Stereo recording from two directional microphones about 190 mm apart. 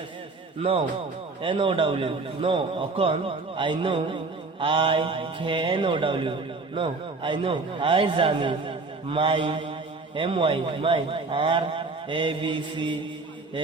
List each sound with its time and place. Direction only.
1.4 s a man's voice: 25° right (ahead or behind)